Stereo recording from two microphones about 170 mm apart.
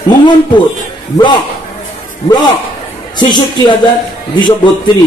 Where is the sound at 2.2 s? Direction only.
25° left (ahead or behind).